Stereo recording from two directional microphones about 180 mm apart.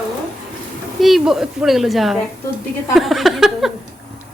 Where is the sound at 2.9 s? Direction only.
Centre (ahead or behind).